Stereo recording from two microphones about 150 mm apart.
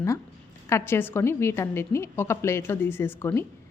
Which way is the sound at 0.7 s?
15° left (ahead or behind).